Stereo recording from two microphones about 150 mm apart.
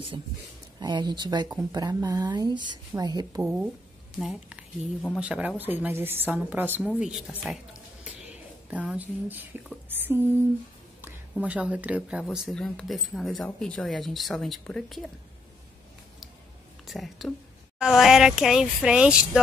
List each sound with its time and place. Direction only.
0.7 s speech: 30° right (ahead or behind)
3.4 s speech: 5° right (ahead or behind)
8.0 s a sound: 5° right (ahead or behind)
9.8 s speech: 15° right (ahead or behind)
11.4 s speech: 10° right (ahead or behind)
16.8 s a woman's voice: centre (ahead or behind)